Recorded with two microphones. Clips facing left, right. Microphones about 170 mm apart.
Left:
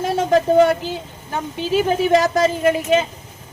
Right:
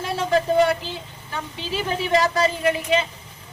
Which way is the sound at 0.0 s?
45° left (ahead or behind).